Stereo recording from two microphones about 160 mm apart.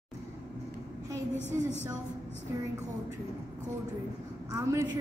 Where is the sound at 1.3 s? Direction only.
15° left (ahead or behind).